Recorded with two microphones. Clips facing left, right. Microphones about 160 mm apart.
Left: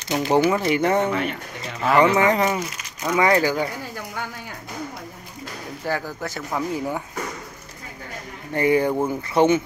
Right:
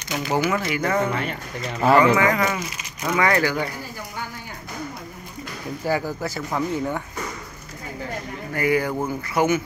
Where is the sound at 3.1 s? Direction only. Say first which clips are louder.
Left 2 dB; 15° left (ahead or behind).